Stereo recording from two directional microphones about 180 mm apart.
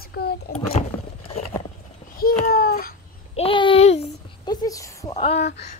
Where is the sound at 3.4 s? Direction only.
30° left (ahead or behind).